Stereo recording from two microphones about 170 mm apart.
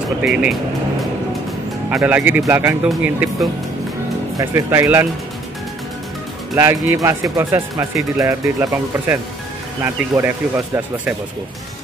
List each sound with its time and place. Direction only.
0.2 s speech: 5° right (ahead or behind)
1.9 s speech: 10° right (ahead or behind)
4.4 s speech: 15° right (ahead or behind)
6.5 s speech: 15° right (ahead or behind)